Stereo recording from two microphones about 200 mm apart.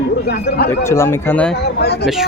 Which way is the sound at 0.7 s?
15° left (ahead or behind).